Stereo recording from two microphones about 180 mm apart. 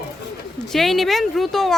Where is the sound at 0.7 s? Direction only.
Centre (ahead or behind).